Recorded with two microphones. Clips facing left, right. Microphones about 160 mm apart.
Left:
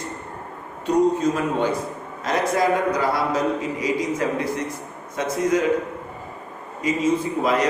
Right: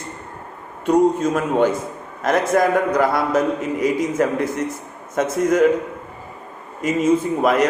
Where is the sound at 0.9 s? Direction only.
50° right (ahead or behind).